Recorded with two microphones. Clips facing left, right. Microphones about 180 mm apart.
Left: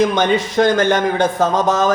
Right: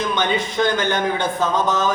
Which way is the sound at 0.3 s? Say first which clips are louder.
Left 5 dB; 45° left (ahead or behind).